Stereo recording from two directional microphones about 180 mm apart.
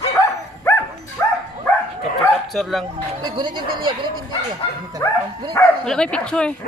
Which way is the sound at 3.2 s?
25° right (ahead or behind).